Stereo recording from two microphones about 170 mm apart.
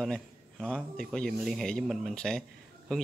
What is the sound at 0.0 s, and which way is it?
Speech, centre (ahead or behind).